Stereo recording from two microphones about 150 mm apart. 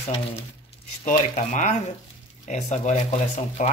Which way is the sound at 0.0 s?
45° left (ahead or behind).